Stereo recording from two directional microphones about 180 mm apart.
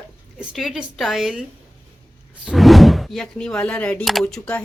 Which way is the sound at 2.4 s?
Centre (ahead or behind).